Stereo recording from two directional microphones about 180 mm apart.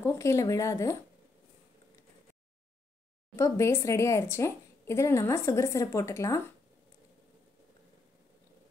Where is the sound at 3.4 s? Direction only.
15° left (ahead or behind).